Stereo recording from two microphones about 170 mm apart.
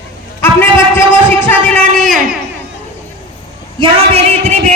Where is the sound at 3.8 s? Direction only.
35° right (ahead or behind).